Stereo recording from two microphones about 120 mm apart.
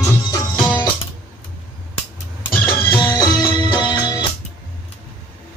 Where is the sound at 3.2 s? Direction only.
35° left (ahead or behind).